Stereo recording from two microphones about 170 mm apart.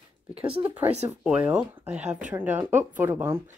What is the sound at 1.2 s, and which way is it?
Speech, 5° right (ahead or behind).